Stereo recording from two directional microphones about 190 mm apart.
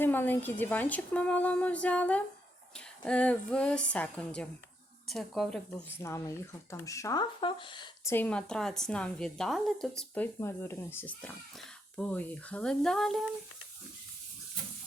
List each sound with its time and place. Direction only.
0.0 s a woman's voice: 10° left (ahead or behind)
8.1 s a woman's voice: 5° left (ahead or behind)